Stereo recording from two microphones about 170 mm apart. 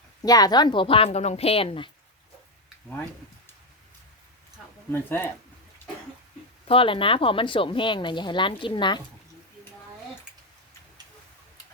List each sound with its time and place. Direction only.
0.2 s a woman's voice: 20° left (ahead or behind)
4.9 s speech: 15° left (ahead or behind)
6.7 s speech: 30° left (ahead or behind)